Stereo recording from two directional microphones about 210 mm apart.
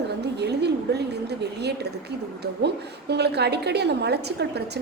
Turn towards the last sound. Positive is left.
turn(degrees=-50)  # may be behind; listen again after turning